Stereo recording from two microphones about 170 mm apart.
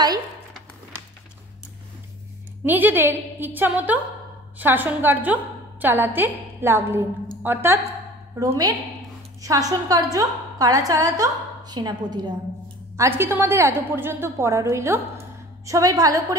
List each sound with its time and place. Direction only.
2.6 s a woman's voice: 10° right (ahead or behind)